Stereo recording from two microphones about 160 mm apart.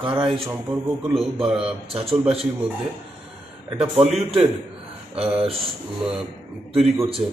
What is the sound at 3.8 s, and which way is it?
Speech, 40° right (ahead or behind).